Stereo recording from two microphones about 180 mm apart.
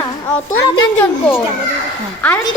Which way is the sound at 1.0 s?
10° left (ahead or behind).